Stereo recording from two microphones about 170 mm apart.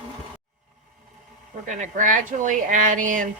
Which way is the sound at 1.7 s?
45° right (ahead or behind).